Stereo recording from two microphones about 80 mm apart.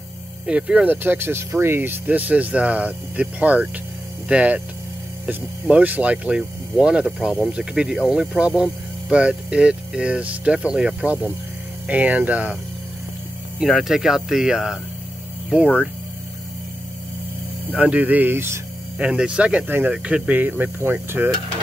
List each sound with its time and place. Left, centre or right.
0.5 s speech: centre
1.0 s speech: right
13.6 s speech: centre
17.6 s speech: centre
18.9 s speech: centre